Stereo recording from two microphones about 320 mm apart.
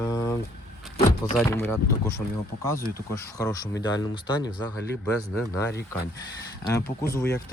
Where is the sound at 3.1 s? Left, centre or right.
Centre.